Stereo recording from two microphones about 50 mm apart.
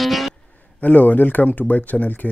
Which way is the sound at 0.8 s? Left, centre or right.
Left.